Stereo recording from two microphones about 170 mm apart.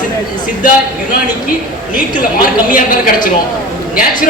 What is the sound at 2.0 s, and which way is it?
A woman's voice, 50° left (ahead or behind).